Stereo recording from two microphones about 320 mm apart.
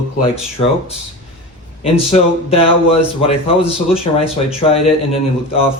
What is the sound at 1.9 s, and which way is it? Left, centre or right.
Speech, centre.